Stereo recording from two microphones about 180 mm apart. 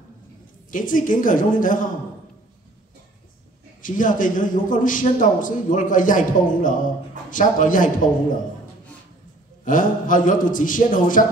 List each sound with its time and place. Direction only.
0.7 s a man's voice: 50° left (ahead or behind)
3.8 s a man's voice: 45° left (ahead or behind)
9.7 s a man's voice: 45° left (ahead or behind)